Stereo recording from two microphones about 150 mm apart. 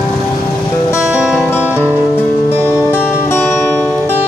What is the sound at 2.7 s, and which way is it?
Music, 15° left (ahead or behind).